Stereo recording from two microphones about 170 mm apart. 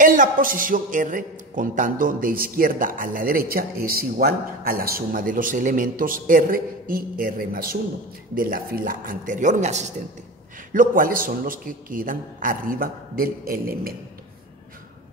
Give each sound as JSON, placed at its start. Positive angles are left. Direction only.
{"t": 0.0, "sound": "a man's voice", "side_deg": -50}
{"t": 10.7, "sound": "a man's voice", "side_deg": -55}